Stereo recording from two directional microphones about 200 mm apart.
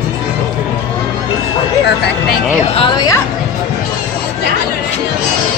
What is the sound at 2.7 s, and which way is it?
Speech, 25° left (ahead or behind).